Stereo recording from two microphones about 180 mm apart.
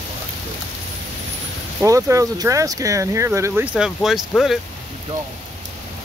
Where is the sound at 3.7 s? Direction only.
5° right (ahead or behind).